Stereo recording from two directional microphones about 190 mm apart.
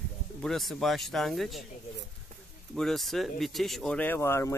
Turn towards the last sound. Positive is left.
turn(degrees=15)  # may be behind; listen again after turning